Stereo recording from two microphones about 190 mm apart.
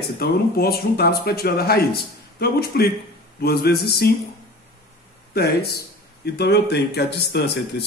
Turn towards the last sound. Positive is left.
turn(degrees=60)  # may be behind; listen again after turning